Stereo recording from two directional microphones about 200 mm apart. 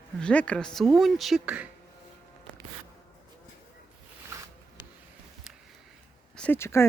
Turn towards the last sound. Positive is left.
turn(degrees=15)  # may be behind; listen again after turning